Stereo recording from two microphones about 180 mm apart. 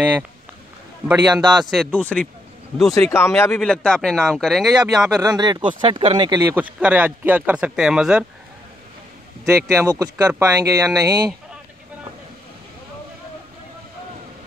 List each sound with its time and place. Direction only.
1.0 s speech: 5° right (ahead or behind)
5.2 s speech: 20° right (ahead or behind)
6.4 s speech: 10° right (ahead or behind)
9.8 s speech: 20° right (ahead or behind)